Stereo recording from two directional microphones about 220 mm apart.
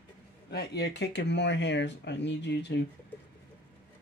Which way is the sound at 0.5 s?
50° left (ahead or behind).